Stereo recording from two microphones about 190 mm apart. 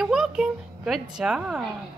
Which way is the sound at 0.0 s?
5° right (ahead or behind).